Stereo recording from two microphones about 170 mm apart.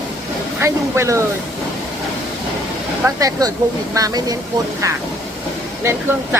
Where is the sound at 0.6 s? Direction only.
15° right (ahead or behind).